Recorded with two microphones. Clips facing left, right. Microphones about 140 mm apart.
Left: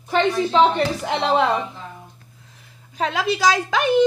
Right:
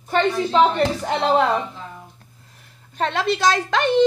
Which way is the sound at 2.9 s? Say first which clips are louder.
Right 1 dB; 5° left (ahead or behind).